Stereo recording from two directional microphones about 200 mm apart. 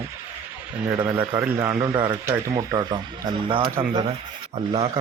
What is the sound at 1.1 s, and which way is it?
A man's voice, 10° right (ahead or behind).